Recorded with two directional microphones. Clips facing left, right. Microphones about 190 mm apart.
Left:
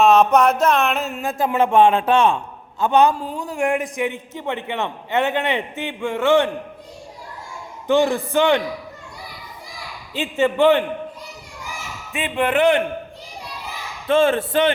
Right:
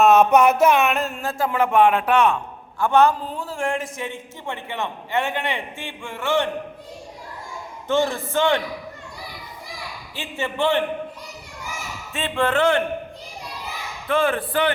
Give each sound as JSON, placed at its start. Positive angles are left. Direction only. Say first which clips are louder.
{"t": 0.0, "sound": "a sound", "louder": "even", "side_deg": -5}
{"t": 0.9, "sound": "speech", "louder": "even", "side_deg": 5}
{"t": 1.2, "sound": "a man's voice", "louder": "left 5 dB", "side_deg": 15}
{"t": 7.9, "sound": "a man's voice", "louder": "left 4 dB", "side_deg": 15}
{"t": 10.2, "sound": "a man's voice", "louder": "left 8 dB", "side_deg": 15}
{"t": 12.1, "sound": "a man's voice", "louder": "left 2 dB", "side_deg": 15}
{"t": 14.1, "sound": "a man's voice", "louder": "left 4 dB", "side_deg": 25}